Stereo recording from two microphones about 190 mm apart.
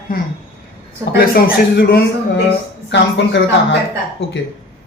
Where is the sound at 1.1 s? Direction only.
55° left (ahead or behind).